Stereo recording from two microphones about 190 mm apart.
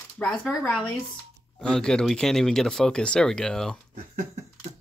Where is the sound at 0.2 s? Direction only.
Centre (ahead or behind).